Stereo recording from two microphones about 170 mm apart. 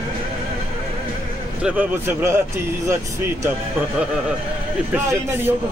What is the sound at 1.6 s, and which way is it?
Speech, 10° right (ahead or behind).